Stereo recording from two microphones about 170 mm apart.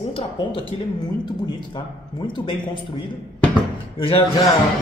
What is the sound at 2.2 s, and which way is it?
Speech, 30° left (ahead or behind).